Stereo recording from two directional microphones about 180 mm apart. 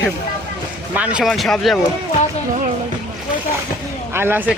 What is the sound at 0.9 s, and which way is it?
Speech, 5° right (ahead or behind).